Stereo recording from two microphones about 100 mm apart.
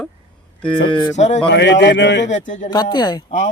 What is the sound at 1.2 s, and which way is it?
Speech, 90° left.